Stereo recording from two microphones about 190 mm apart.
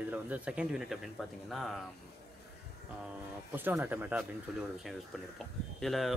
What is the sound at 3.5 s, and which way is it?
Speech, 10° right (ahead or behind).